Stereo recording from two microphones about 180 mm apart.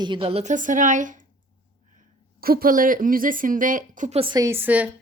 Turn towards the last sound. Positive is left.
turn(degrees=-10)  # may be behind; listen again after turning